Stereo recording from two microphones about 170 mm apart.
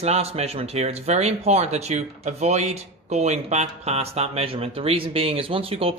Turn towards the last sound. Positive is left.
turn(degrees=-35)  # may be behind; listen again after turning